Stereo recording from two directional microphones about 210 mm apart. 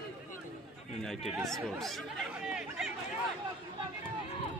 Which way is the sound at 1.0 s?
Centre (ahead or behind).